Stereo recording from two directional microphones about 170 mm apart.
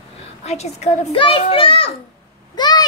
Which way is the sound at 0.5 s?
40° left (ahead or behind).